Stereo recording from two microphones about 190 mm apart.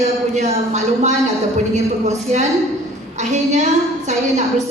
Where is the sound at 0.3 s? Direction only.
40° right (ahead or behind).